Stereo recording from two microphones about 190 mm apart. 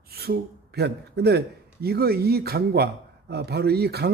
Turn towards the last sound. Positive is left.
turn(degrees=-55)  # may be behind; listen again after turning